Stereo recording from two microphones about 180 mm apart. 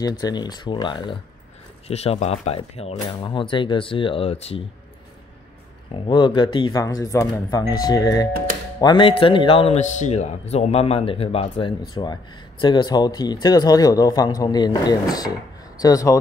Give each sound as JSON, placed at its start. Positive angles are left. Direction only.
{"t": 0.2, "sound": "speech", "side_deg": 20}
{"t": 5.9, "sound": "speech", "side_deg": 25}